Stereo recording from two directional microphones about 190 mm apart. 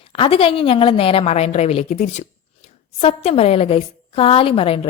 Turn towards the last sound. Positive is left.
turn(degrees=30)  # may be behind; listen again after turning